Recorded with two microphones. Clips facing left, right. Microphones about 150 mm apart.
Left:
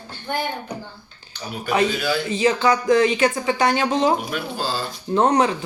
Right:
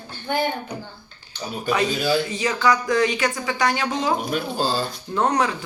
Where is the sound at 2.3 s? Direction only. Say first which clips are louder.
Left 3 dB; 30° left (ahead or behind).